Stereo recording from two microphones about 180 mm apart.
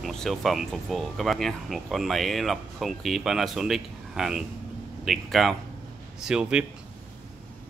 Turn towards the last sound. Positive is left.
turn(degrees=-5)  # may be behind; listen again after turning